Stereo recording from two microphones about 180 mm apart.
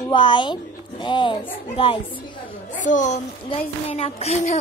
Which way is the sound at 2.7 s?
45° left (ahead or behind).